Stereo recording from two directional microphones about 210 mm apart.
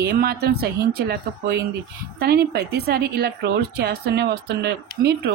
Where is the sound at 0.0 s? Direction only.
45° right (ahead or behind).